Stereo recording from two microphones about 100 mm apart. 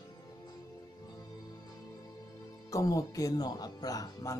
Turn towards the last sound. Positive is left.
turn(degrees=35)  # may be behind; listen again after turning